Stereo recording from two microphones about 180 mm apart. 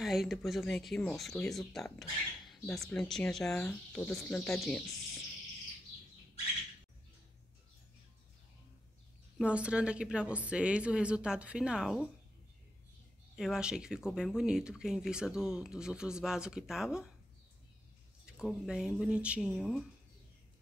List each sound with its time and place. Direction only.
0.0 s speech: centre (ahead or behind)
9.4 s speech: 5° right (ahead or behind)
13.4 s speech: 5° right (ahead or behind)
18.2 s speech: 5° right (ahead or behind)